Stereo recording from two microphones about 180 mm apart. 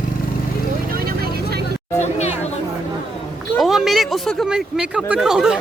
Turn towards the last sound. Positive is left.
turn(degrees=-5)  # may be behind; listen again after turning